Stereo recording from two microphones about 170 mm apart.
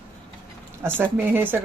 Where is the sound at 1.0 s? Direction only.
10° right (ahead or behind).